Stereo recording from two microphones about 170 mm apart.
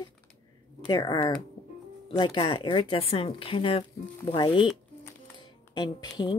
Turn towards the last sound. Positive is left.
turn(degrees=25)  # may be behind; listen again after turning